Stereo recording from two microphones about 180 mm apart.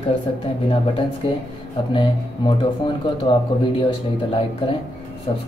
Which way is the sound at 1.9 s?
30° left (ahead or behind).